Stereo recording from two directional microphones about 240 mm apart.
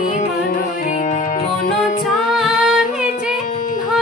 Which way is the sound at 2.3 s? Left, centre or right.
Centre.